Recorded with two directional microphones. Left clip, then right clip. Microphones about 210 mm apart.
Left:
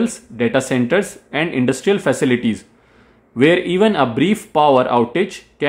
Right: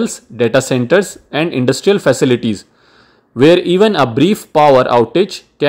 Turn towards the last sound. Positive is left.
turn(degrees=-25)  # may be behind; listen again after turning